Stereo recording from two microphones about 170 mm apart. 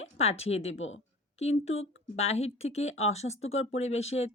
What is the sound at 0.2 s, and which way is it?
A woman's voice, 35° left (ahead or behind).